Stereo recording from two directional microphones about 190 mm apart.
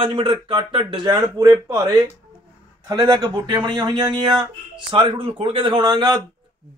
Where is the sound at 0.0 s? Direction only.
25° right (ahead or behind).